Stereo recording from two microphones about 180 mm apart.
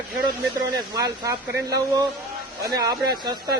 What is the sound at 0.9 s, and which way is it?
Speech, 20° right (ahead or behind).